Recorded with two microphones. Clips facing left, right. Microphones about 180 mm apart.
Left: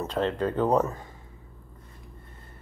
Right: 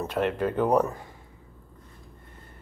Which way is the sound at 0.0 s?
15° right (ahead or behind).